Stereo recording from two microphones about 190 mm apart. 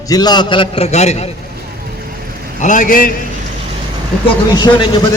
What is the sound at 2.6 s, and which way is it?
Speech, 45° left (ahead or behind).